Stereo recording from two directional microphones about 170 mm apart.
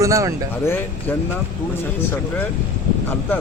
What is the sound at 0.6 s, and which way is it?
Speech, 15° left (ahead or behind).